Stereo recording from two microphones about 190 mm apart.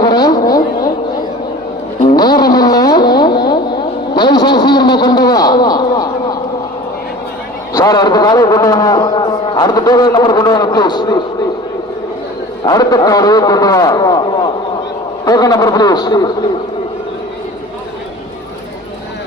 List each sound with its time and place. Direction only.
0.0 s vehicle: 20° left (ahead or behind)
2.0 s a sound: 20° left (ahead or behind)
7.7 s a man's voice: 15° left (ahead or behind)
12.6 s a man's voice: 20° left (ahead or behind)